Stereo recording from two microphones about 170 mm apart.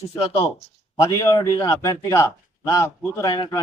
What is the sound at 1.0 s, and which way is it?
Speech, 20° left (ahead or behind).